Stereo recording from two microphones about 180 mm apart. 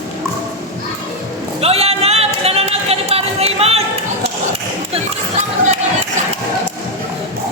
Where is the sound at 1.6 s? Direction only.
35° right (ahead or behind).